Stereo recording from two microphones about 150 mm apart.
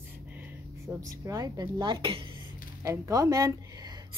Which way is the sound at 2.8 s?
20° right (ahead or behind).